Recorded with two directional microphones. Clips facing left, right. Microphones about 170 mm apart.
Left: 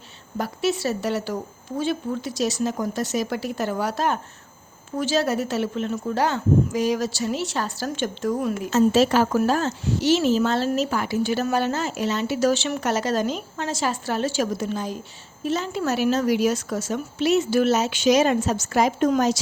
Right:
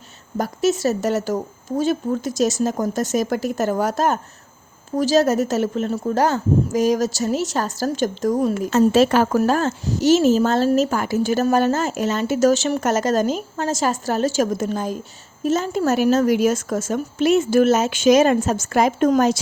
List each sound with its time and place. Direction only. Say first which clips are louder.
0.3 s speech: right 4 dB; 45° right (ahead or behind)
8.7 s speech: right 2 dB; 55° right (ahead or behind)